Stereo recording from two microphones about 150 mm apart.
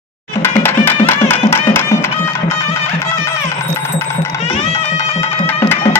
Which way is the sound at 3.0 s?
15° left (ahead or behind).